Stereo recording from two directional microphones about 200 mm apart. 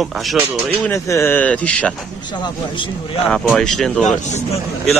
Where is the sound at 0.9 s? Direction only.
15° left (ahead or behind).